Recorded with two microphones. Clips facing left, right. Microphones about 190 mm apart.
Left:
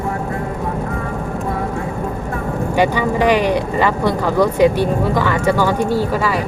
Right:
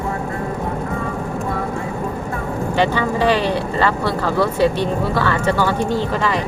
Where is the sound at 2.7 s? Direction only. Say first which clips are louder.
Left 2 dB; 15° left (ahead or behind).